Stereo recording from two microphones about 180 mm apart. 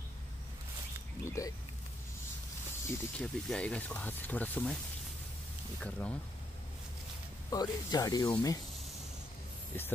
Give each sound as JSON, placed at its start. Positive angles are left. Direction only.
{"t": 1.2, "sound": "a sound", "side_deg": 15}
{"t": 2.9, "sound": "speech", "side_deg": 5}
{"t": 5.8, "sound": "speech", "side_deg": 5}
{"t": 7.4, "sound": "speech", "side_deg": 20}